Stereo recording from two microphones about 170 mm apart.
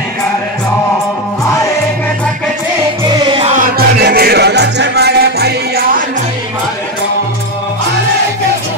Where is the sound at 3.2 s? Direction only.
30° right (ahead or behind).